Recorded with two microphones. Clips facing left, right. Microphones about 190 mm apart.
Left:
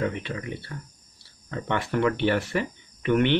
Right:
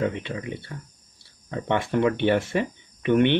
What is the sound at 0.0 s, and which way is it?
Speech, 20° right (ahead or behind).